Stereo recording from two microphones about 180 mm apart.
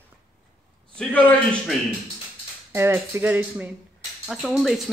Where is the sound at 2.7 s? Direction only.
15° right (ahead or behind).